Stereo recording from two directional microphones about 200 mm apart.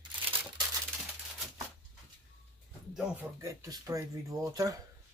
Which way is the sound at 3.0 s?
10° right (ahead or behind).